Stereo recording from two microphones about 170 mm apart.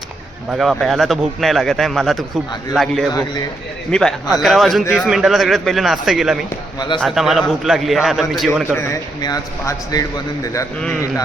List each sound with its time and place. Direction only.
0.5 s a man's voice: centre (ahead or behind)
3.1 s a man's voice: 25° left (ahead or behind)
3.9 s a man's voice: 5° left (ahead or behind)
6.7 s a man's voice: 25° left (ahead or behind)
7.0 s a man's voice: centre (ahead or behind)
8.7 s a man's voice: 15° left (ahead or behind)